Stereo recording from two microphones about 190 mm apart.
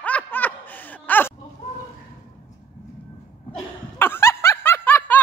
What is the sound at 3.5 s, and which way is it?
Snicker, 10° left (ahead or behind).